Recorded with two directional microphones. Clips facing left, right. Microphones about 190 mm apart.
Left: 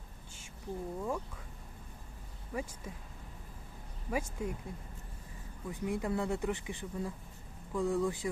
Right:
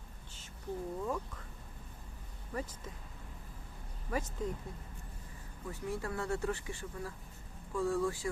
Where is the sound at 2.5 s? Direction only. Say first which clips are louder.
Left 1 dB; 10° left (ahead or behind).